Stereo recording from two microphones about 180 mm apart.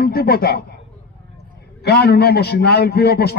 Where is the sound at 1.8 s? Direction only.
65° left (ahead or behind).